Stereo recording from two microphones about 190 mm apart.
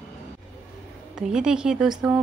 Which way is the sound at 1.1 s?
5° right (ahead or behind).